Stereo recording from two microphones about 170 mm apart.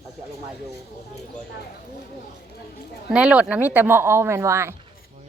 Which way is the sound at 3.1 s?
5° right (ahead or behind).